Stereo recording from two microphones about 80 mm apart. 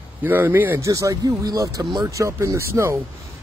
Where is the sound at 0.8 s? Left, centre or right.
Right.